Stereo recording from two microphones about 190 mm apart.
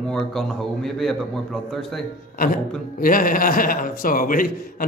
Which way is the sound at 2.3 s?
50° left (ahead or behind).